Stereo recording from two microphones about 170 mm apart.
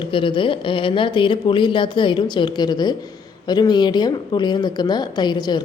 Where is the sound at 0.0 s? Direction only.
30° left (ahead or behind).